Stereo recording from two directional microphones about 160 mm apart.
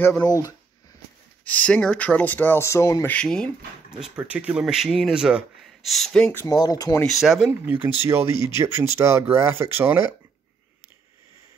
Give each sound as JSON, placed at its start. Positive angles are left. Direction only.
{"t": 0.2, "sound": "speech", "side_deg": 25}
{"t": 1.4, "sound": "speech", "side_deg": 10}
{"t": 4.0, "sound": "speech", "side_deg": -10}
{"t": 6.4, "sound": "speech", "side_deg": 20}
{"t": 7.1, "sound": "speech", "side_deg": 0}